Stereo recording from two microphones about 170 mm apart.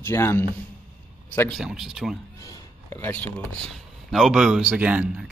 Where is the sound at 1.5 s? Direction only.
5° right (ahead or behind).